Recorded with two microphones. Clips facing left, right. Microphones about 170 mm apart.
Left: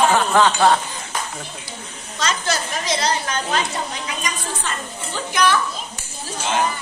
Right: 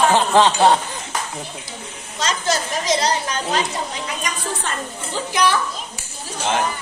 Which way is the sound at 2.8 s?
40° right (ahead or behind).